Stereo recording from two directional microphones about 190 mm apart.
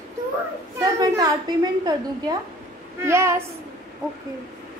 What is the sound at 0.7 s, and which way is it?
A woman's voice, 20° right (ahead or behind).